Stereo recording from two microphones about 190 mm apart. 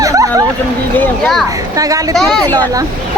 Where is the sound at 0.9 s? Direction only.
Centre (ahead or behind).